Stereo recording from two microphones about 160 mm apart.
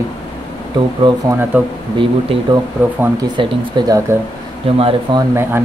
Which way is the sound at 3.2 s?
30° right (ahead or behind).